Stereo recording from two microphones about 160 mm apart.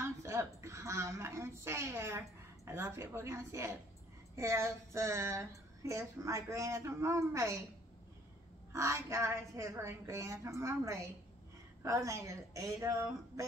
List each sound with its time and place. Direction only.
0.0 s a woman's voice: 20° right (ahead or behind)
8.7 s a woman's voice: 15° right (ahead or behind)